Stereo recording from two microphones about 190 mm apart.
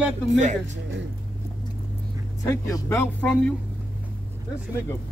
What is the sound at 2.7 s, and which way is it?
Speech, 10° left (ahead or behind).